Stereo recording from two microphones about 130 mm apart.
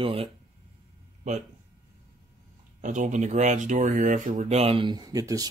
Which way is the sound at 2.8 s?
70° right (ahead or behind).